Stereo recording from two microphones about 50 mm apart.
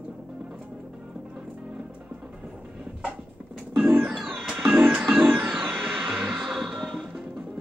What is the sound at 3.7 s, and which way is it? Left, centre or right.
Music, centre.